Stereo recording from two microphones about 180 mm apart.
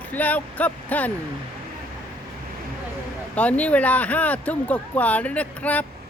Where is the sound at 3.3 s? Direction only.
5° left (ahead or behind).